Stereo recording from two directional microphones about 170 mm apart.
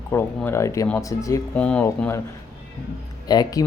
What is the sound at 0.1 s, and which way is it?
Speech, 10° left (ahead or behind).